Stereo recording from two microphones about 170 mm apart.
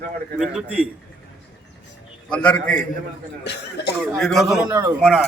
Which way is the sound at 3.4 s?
85° left.